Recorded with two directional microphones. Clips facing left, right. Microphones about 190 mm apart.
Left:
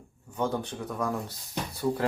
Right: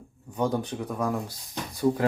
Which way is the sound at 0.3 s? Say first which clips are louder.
Right 3 dB; 15° right (ahead or behind).